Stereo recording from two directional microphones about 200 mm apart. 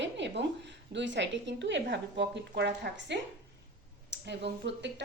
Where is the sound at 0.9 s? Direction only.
65° right (ahead or behind).